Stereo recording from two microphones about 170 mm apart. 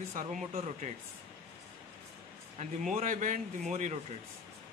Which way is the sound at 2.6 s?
50° right (ahead or behind).